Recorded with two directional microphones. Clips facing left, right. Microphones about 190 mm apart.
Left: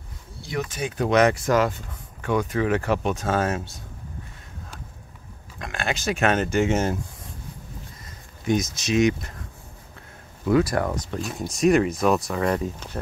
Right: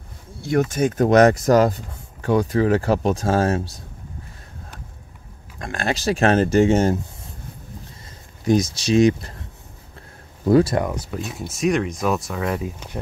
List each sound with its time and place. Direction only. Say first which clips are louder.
0.4 s speech: right 9 dB; 50° right (ahead or behind)
5.6 s speech: right 4 dB; 40° right (ahead or behind)
8.5 s speech: right 5 dB; 35° right (ahead or behind)
10.4 s speech: right 4 dB; 30° right (ahead or behind)
10.9 s speech: even; 5° right (ahead or behind)